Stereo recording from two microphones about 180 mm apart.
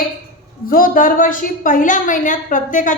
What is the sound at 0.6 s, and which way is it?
A woman's voice, 50° left (ahead or behind).